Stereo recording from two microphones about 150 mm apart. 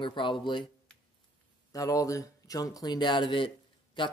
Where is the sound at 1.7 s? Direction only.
25° left (ahead or behind).